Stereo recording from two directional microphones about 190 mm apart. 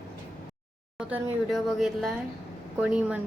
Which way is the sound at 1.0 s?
Centre (ahead or behind).